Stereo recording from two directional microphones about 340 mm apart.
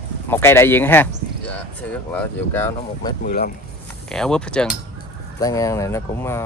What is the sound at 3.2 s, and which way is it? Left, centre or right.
Speech, left.